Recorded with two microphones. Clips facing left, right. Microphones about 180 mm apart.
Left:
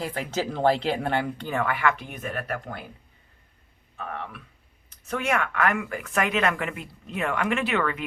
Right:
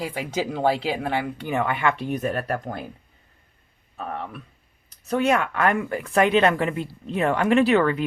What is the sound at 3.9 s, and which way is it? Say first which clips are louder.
Speech: right 3 dB; 35° right (ahead or behind).